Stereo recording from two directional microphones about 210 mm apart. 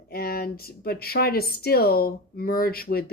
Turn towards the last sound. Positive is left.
turn(degrees=45)  # may be behind; listen again after turning